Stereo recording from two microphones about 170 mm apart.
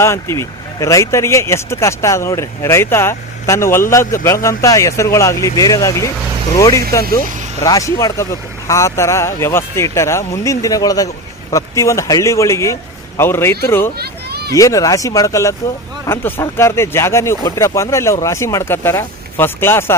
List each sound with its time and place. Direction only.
0.0 s speech: 15° left (ahead or behind)
7.0 s speech: 60° right (ahead or behind)
7.6 s speech: 20° left (ahead or behind)
14.0 s a sound: 70° right (ahead or behind)
14.5 s speech: 20° left (ahead or behind)